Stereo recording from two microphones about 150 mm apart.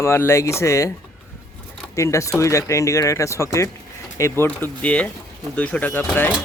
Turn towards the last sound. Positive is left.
turn(degrees=15)  # may be behind; listen again after turning